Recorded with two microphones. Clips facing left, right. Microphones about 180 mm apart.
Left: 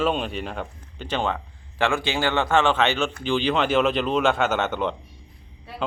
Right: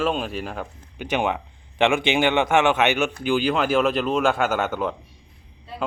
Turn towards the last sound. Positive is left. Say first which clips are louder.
# even
turn(degrees=-5)  # may be behind; listen again after turning